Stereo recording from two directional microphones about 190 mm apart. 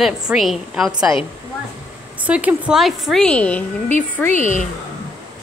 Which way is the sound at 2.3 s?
5° right (ahead or behind).